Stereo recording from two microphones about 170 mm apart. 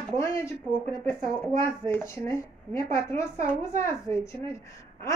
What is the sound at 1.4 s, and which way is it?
A woman's voice, 15° left (ahead or behind).